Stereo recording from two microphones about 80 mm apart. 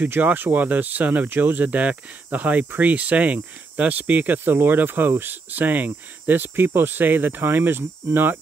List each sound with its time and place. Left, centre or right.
0.1 s speech: right